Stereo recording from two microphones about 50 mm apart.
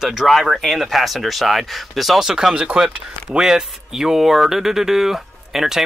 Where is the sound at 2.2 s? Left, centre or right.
Centre.